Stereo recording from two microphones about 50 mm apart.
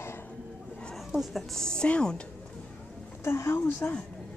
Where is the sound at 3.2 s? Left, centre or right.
Left.